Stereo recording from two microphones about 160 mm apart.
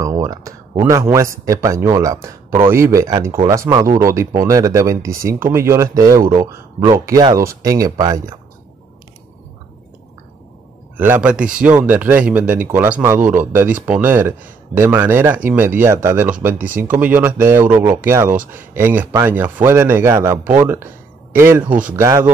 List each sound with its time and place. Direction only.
0.0 s speech: 20° right (ahead or behind)
11.0 s speech: 10° right (ahead or behind)